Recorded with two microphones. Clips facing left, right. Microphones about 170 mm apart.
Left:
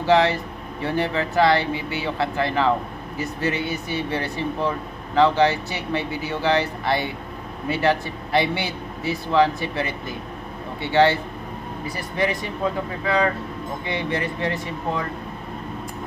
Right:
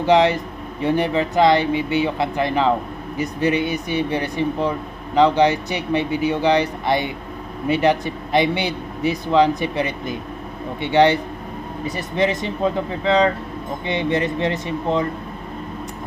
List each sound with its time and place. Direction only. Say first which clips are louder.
0.0 s a man's voice: right 3 dB; 20° right (ahead or behind)